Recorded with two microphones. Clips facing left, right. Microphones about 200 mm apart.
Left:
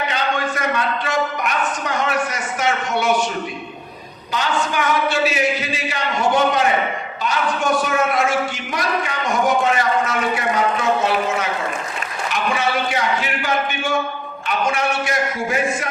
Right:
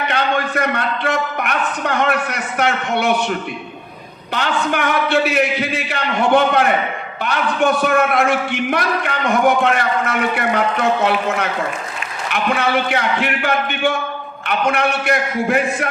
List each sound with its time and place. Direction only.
0.1 s a man's voice: 60° right (ahead or behind)
4.3 s a man's voice: 60° right (ahead or behind)